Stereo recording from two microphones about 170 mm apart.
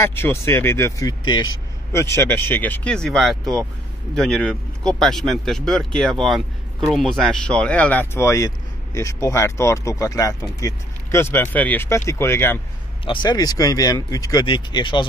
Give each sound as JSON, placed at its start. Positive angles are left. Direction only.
{"t": 0.0, "sound": "speech", "side_deg": 15}
{"t": 13.0, "sound": "speech", "side_deg": 30}